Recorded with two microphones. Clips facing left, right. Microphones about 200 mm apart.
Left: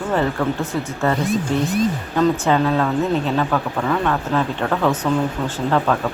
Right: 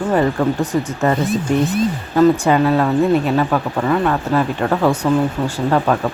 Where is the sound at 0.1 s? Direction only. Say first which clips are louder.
Right 3 dB; 15° right (ahead or behind).